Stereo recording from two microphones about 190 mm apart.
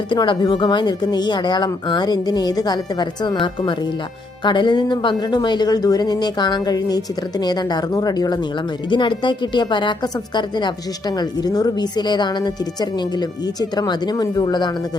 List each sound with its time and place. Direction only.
0.1 s speech: 25° left (ahead or behind)